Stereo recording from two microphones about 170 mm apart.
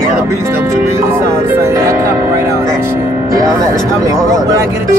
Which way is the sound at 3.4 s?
20° right (ahead or behind).